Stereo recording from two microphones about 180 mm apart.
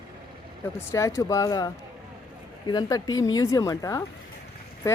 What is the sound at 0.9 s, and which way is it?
Speech, 15° left (ahead or behind).